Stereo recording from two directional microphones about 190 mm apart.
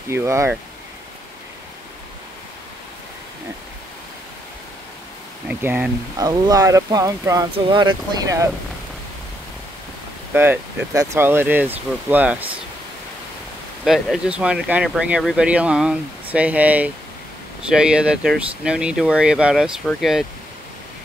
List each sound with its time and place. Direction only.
0.1 s speech: 15° right (ahead or behind)
5.5 s speech: 10° right (ahead or behind)
10.3 s speech: 10° right (ahead or behind)
13.8 s speech: centre (ahead or behind)